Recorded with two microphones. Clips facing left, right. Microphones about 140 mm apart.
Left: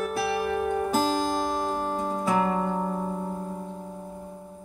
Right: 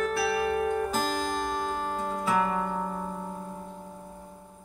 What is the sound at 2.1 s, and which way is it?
Music, 35° left (ahead or behind).